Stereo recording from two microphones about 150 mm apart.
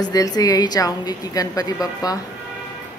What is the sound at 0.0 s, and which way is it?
Speech, 25° left (ahead or behind).